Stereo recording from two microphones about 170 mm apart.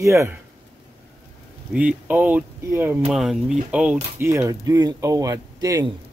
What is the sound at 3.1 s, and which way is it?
Speech, centre (ahead or behind).